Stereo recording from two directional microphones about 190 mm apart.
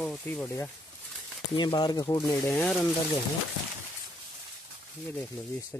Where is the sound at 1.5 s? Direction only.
25° left (ahead or behind); by 2.8 s 5° left (ahead or behind).